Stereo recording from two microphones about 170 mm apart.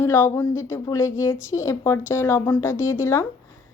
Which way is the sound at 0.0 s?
15° left (ahead or behind).